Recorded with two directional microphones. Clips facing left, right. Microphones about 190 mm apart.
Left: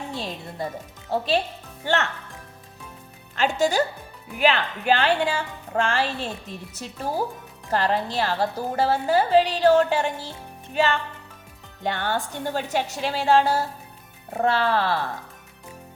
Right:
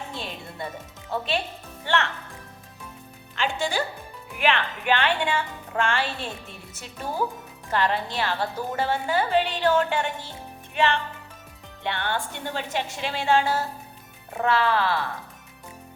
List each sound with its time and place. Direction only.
0.1 s music: 35° left (ahead or behind)
1.1 s speech: 35° left (ahead or behind)
3.3 s speech: 40° left (ahead or behind)
11.8 s speech: 40° left (ahead or behind)